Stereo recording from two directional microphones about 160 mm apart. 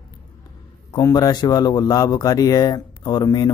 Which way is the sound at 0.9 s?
25° left (ahead or behind).